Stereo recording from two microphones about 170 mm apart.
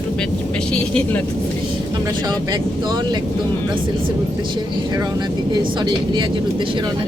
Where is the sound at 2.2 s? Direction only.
25° right (ahead or behind).